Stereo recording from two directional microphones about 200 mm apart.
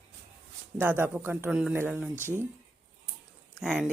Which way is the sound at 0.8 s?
10° right (ahead or behind).